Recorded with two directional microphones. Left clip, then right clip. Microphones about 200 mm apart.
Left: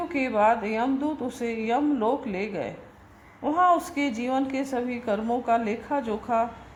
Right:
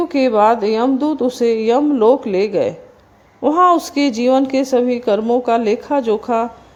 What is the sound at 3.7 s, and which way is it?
Speech, 70° right (ahead or behind).